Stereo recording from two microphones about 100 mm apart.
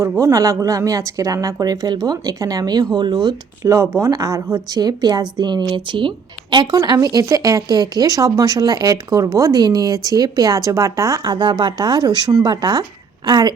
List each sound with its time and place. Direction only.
0.2 s speech: 30° right (ahead or behind)